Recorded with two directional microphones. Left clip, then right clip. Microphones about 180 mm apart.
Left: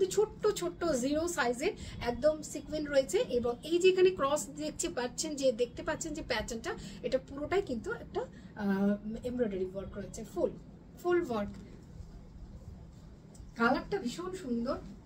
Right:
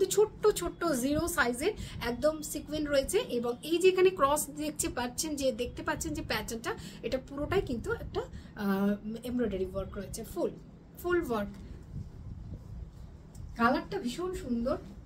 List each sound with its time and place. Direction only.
0.0 s a woman's voice: 25° right (ahead or behind)
13.6 s speech: 15° right (ahead or behind)